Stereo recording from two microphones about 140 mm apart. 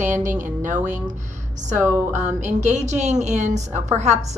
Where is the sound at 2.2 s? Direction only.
60° right (ahead or behind).